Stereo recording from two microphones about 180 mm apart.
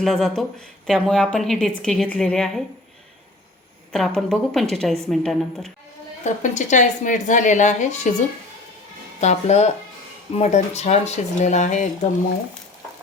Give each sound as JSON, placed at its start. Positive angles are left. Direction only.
{"t": 0.0, "sound": "a woman's voice", "side_deg": 0}
{"t": 3.9, "sound": "a woman's voice", "side_deg": 0}
{"t": 6.2, "sound": "a woman's voice", "side_deg": 40}
{"t": 9.2, "sound": "speech", "side_deg": 40}